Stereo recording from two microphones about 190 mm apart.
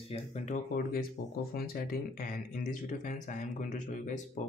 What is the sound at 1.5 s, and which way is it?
Speech, 50° left (ahead or behind).